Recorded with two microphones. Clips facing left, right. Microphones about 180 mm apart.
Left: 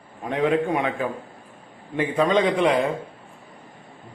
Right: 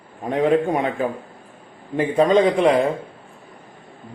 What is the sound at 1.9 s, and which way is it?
Speech, 40° right (ahead or behind).